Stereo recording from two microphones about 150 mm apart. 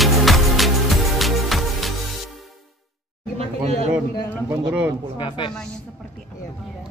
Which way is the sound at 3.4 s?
45° right (ahead or behind).